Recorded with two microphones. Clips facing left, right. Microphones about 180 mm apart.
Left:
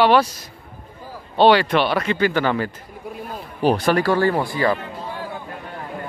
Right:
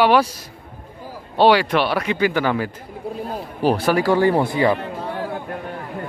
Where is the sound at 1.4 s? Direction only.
10° right (ahead or behind).